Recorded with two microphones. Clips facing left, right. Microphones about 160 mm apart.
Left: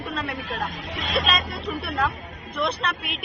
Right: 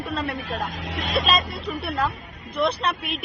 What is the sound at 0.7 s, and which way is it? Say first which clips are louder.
Speech: right 2 dB; 80° right.